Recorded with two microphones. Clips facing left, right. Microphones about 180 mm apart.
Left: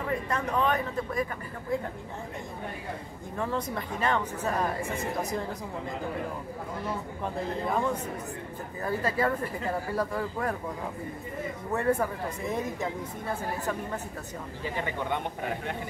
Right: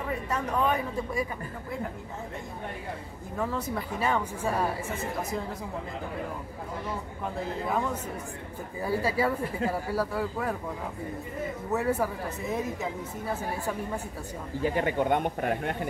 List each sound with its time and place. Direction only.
0.3 s speech: 10° right (ahead or behind)
3.3 s speech: 5° right (ahead or behind)
8.8 s speech: 10° right (ahead or behind)
11.7 s speech: 5° right (ahead or behind)
14.6 s a man's voice: 50° right (ahead or behind)